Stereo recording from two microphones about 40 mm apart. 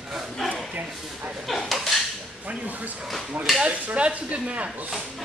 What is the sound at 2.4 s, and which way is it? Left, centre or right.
Speech, right.